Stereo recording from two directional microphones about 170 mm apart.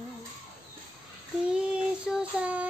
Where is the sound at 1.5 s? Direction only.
5° right (ahead or behind).